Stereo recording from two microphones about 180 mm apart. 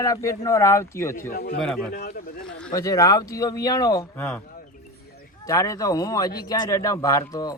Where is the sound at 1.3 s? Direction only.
60° left (ahead or behind).